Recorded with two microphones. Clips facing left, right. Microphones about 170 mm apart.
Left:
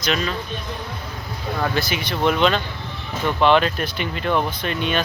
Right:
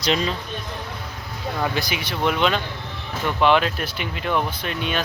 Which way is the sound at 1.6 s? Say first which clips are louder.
Left 2 dB; 15° right (ahead or behind).